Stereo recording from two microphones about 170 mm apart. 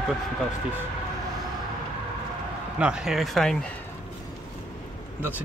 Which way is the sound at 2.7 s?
5° right (ahead or behind).